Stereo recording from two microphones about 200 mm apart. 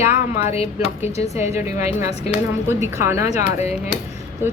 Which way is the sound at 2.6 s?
15° right (ahead or behind).